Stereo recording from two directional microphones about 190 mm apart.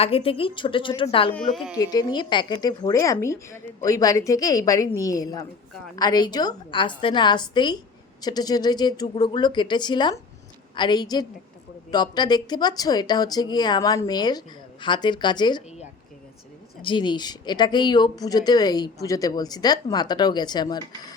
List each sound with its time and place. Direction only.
0.0 s speech: 30° left (ahead or behind)
16.8 s speech: 25° left (ahead or behind)